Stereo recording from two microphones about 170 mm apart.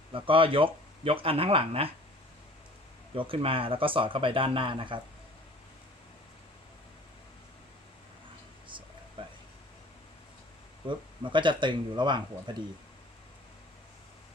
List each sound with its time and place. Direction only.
0.1 s speech: 30° right (ahead or behind)
3.2 s speech: 30° right (ahead or behind)
10.8 s speech: 30° right (ahead or behind)